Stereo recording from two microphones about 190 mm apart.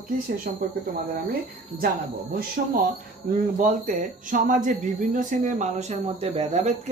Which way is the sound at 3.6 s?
40° right (ahead or behind).